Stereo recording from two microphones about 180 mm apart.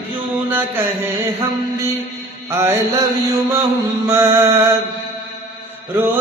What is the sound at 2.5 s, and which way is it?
Mantra, 15° right (ahead or behind).